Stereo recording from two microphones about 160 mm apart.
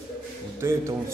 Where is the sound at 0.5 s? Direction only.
15° right (ahead or behind).